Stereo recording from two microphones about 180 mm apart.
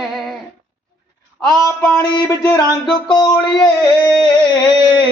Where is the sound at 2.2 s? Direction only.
20° left (ahead or behind).